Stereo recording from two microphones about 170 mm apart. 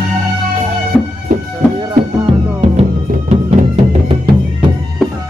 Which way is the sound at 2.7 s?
40° right (ahead or behind).